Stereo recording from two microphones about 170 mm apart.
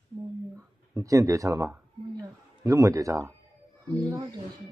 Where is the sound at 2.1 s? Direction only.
20° right (ahead or behind).